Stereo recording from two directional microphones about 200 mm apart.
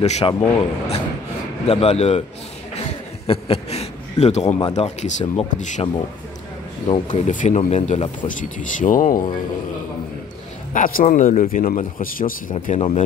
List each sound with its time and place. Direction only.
0.0 s speech: 35° left (ahead or behind)
3.3 s a man's voice: 30° left (ahead or behind)
6.9 s speech: 35° left (ahead or behind)
10.7 s a man's voice: 40° left (ahead or behind)
12.6 s speech: 35° left (ahead or behind)